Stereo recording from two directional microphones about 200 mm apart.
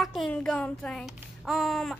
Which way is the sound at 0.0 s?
Centre (ahead or behind).